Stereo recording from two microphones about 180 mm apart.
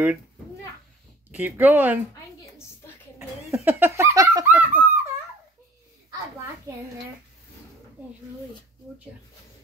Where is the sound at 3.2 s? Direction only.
10° right (ahead or behind).